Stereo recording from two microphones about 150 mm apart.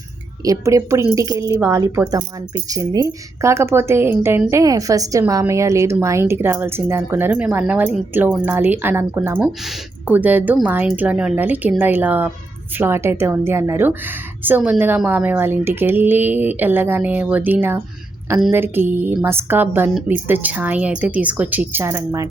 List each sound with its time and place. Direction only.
0.4 s speech: 20° right (ahead or behind)